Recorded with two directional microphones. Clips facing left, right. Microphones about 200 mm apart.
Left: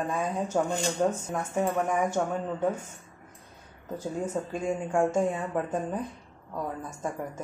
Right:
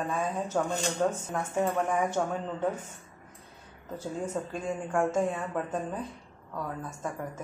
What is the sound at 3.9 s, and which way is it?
A woman's voice, 15° left (ahead or behind).